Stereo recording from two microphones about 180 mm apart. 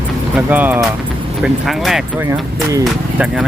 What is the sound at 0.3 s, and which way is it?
Speech, 10° right (ahead or behind).